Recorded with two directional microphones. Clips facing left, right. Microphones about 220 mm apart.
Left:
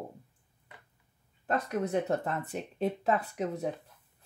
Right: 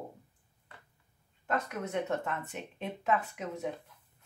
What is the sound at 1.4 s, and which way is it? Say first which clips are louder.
Speech: left 4 dB; 35° left (ahead or behind).